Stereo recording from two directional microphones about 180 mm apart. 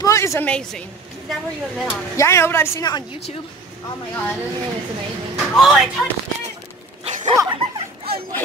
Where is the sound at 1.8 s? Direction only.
15° left (ahead or behind).